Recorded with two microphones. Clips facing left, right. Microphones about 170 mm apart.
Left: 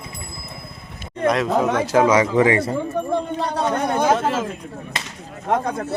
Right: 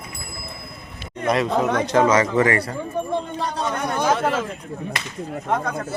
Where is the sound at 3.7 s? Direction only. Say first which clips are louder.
Left 3 dB; 30° left (ahead or behind).